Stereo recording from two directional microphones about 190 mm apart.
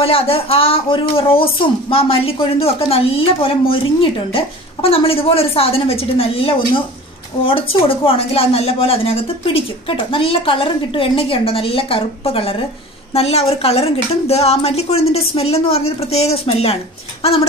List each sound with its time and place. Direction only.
0.0 s a woman's voice: 30° left (ahead or behind)